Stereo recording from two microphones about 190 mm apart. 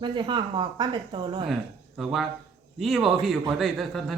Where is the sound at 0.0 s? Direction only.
25° right (ahead or behind).